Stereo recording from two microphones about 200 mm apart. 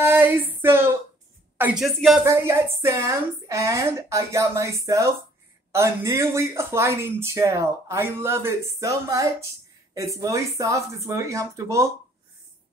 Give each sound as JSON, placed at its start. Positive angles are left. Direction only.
{"t": 0.0, "sound": "a sound", "side_deg": -10}
{"t": 1.6, "sound": "speech", "side_deg": -5}
{"t": 2.2, "sound": "speech", "side_deg": -15}